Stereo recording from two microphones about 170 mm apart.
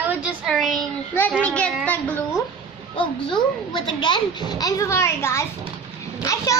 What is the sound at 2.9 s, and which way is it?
A child's voice, 30° left (ahead or behind).